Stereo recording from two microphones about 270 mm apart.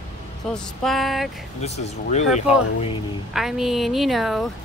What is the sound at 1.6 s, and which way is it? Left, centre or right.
Speech, left.